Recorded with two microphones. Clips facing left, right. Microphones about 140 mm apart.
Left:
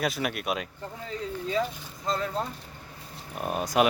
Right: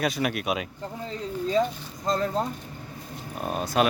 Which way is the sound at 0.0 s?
Centre (ahead or behind).